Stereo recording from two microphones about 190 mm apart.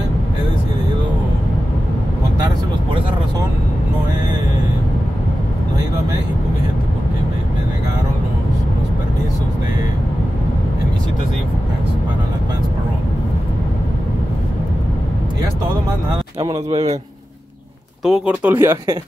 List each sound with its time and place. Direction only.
16.1 s a man's voice: 25° right (ahead or behind)
18.0 s speech: 5° right (ahead or behind)